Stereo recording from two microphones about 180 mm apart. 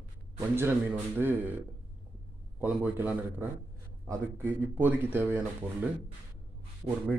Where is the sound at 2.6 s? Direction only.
10° right (ahead or behind).